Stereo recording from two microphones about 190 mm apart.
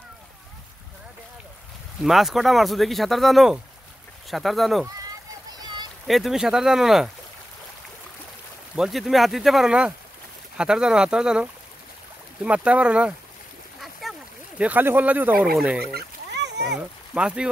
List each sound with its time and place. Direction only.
2.0 s speech: centre (ahead or behind)
5.5 s a sound: 20° right (ahead or behind)
6.0 s speech: centre (ahead or behind)
8.7 s speech: centre (ahead or behind)
12.4 s speech: 5° right (ahead or behind)
14.0 s a sound: centre (ahead or behind)
14.6 s speech: 10° right (ahead or behind)
15.8 s fowl: 55° right (ahead or behind)
16.7 s speech: 5° right (ahead or behind)